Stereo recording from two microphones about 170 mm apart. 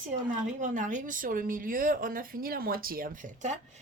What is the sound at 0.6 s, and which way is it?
Speech, 50° right (ahead or behind).